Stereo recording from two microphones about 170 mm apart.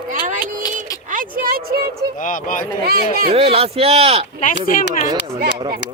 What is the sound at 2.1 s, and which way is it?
Speech, 50° left (ahead or behind).